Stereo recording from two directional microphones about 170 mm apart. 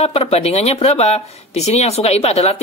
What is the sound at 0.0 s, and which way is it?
Speech, 35° left (ahead or behind).